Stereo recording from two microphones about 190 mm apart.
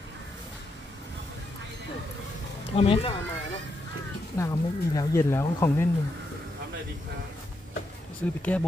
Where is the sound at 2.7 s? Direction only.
30° left (ahead or behind).